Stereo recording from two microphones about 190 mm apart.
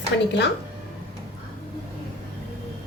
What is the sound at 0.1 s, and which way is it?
Speech, 60° left (ahead or behind).